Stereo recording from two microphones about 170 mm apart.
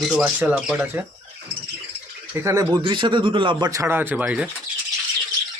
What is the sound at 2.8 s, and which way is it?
Speech, 30° right (ahead or behind).